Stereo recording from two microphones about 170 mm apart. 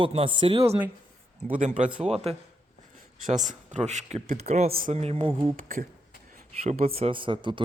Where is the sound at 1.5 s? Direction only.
45° right (ahead or behind); by 5.5 s 30° right (ahead or behind).